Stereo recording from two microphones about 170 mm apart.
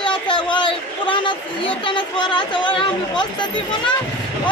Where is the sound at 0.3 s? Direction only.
30° left (ahead or behind).